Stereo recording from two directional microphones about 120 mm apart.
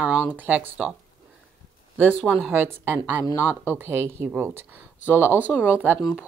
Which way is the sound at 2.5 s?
15° right (ahead or behind).